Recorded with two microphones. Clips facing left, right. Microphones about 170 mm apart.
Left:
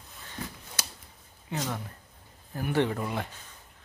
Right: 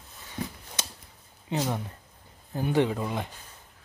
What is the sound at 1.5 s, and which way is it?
Speech, 20° right (ahead or behind).